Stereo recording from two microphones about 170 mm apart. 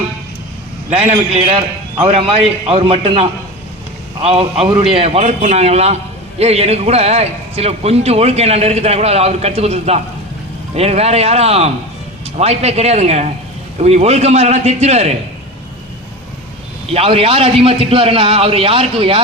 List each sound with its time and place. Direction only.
1.0 s a man's voice: 40° right (ahead or behind)
16.9 s a man's voice: 35° right (ahead or behind)